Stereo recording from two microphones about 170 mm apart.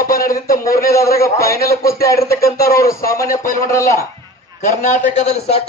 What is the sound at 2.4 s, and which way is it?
Speech, 65° left (ahead or behind).